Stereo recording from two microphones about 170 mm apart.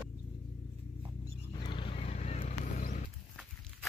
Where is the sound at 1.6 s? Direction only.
30° left (ahead or behind); by 3.1 s 50° left (ahead or behind).